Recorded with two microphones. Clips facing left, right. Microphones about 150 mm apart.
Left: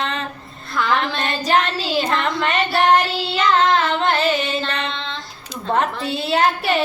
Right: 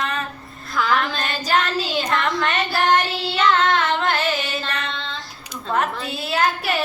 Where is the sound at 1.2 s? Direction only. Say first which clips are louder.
Left 3 dB; 30° left (ahead or behind).